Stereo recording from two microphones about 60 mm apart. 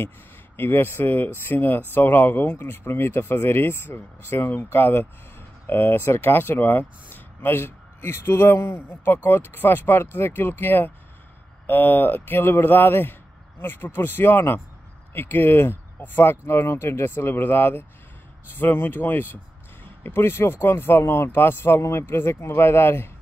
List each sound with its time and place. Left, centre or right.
0.6 s speech: left